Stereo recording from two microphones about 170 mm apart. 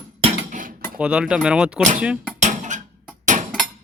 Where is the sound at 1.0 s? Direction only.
5° right (ahead or behind).